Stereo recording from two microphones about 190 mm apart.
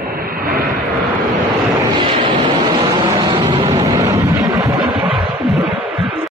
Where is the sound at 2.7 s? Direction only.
25° right (ahead or behind).